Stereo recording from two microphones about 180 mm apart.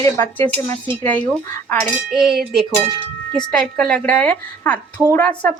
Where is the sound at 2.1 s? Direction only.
Centre (ahead or behind).